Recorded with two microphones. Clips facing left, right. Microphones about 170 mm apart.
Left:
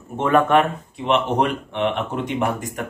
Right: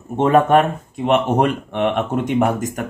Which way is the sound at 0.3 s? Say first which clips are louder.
Right 2 dB; 40° right (ahead or behind).